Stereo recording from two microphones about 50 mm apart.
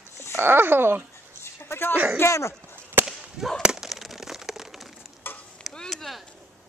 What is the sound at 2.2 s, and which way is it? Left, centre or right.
Speech, left.